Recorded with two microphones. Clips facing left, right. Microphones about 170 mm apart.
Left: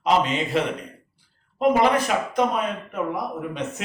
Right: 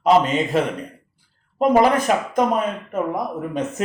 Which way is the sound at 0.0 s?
45° right (ahead or behind).